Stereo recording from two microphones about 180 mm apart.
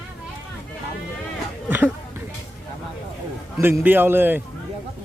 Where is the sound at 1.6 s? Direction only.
10° right (ahead or behind).